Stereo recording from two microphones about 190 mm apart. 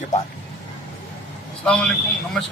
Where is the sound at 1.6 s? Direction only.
5° left (ahead or behind).